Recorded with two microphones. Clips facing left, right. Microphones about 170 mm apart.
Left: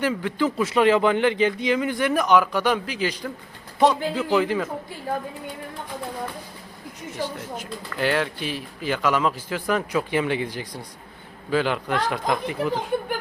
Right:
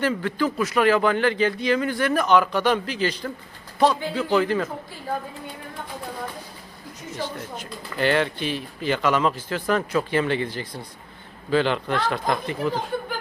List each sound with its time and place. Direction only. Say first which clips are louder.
0.0 s speech: even; 10° left (ahead or behind)
7.2 s speech: left 1 dB; 10° left (ahead or behind)